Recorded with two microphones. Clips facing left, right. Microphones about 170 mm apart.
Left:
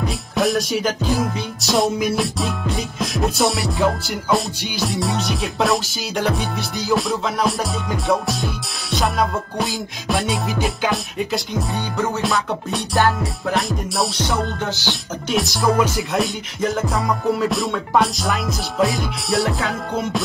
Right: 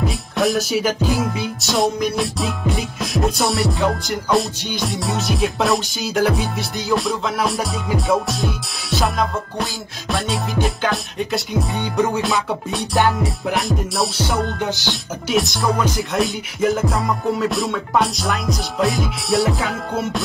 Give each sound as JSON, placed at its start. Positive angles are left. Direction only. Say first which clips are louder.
{"t": 0.0, "sound": "music", "louder": "right 1 dB", "side_deg": 0}
{"t": 4.8, "sound": "music", "louder": "left 1 dB", "side_deg": 0}
{"t": 11.7, "sound": "music", "louder": "right 4 dB", "side_deg": -15}
{"t": 12.2, "sound": "music", "louder": "right 1 dB", "side_deg": 0}
{"t": 14.6, "sound": "music", "louder": "right 2 dB", "side_deg": -15}
{"t": 14.9, "sound": "music", "louder": "right 1 dB", "side_deg": 0}